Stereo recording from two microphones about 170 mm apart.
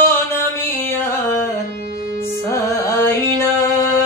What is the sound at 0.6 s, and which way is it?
Music, 10° left (ahead or behind).